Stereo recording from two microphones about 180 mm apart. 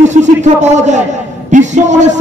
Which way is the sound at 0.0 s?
40° right (ahead or behind).